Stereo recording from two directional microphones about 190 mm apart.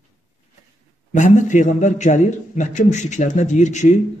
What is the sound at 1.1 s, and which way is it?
A man's voice, 40° left (ahead or behind).